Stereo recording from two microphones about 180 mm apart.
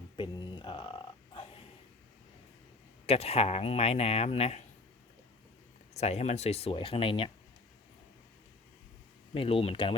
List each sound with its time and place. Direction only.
0.2 s a sound: 25° left (ahead or behind)
3.1 s speech: 35° left (ahead or behind)
5.9 s speech: 35° left (ahead or behind)
9.3 s speech: 30° left (ahead or behind)